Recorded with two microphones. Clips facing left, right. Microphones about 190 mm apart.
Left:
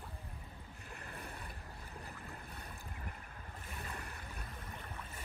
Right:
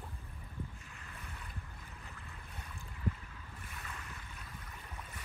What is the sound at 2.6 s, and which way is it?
Boat, 35° left (ahead or behind).